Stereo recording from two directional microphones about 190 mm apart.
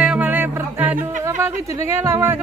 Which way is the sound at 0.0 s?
5° right (ahead or behind).